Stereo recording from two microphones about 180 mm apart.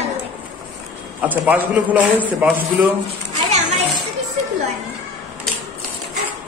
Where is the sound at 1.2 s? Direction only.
10° right (ahead or behind).